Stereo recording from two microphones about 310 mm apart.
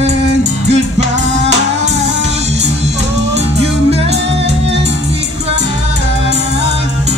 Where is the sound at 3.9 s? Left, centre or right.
Centre.